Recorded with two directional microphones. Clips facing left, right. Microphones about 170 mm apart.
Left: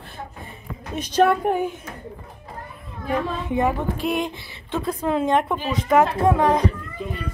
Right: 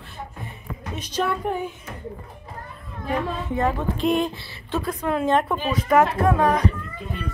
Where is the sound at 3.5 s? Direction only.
15° left (ahead or behind).